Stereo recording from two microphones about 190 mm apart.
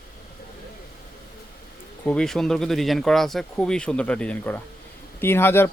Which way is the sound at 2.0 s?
5° left (ahead or behind).